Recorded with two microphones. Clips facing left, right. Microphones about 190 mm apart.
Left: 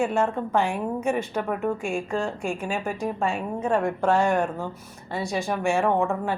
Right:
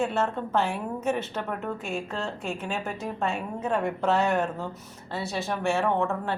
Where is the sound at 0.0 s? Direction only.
10° left (ahead or behind).